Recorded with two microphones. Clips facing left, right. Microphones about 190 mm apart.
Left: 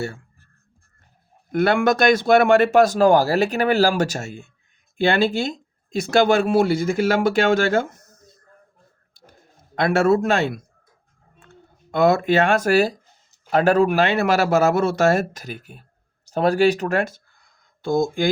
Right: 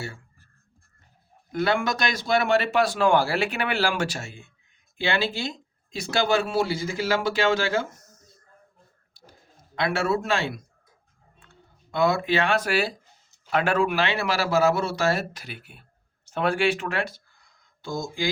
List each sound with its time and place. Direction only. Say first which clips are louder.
1.5 s speech: left 7 dB; 55° left (ahead or behind)
9.7 s speech: left 7 dB; 45° left (ahead or behind)
17.8 s speech: left 10 dB; 55° left (ahead or behind)